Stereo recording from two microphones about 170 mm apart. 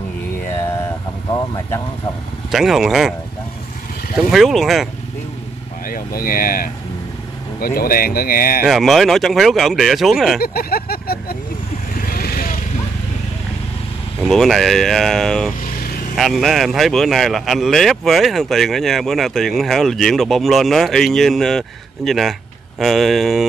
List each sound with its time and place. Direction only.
0.6 s vehicle: 15° left (ahead or behind)
2.5 s speech: centre (ahead or behind)
4.3 s speech: centre (ahead or behind)
5.9 s speech: 55° left (ahead or behind)
8.6 s speech: centre (ahead or behind)
10.4 s a sound: 65° left (ahead or behind)
12.0 s vehicle: 60° left (ahead or behind)
14.2 s speech: centre (ahead or behind)